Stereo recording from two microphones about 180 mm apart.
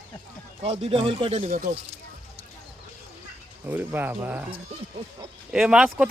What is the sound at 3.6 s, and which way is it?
Speech, 10° right (ahead or behind).